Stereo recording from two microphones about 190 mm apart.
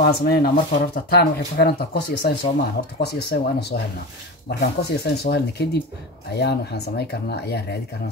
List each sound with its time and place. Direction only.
0.0 s speech: 55° left (ahead or behind)